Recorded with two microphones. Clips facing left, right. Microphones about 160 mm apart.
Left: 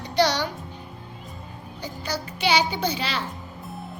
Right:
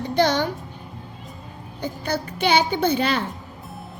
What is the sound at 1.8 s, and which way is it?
A child's voice, 55° right (ahead or behind).